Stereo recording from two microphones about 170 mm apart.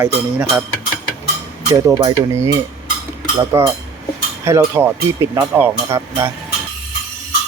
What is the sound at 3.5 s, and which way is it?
Speech, 15° right (ahead or behind).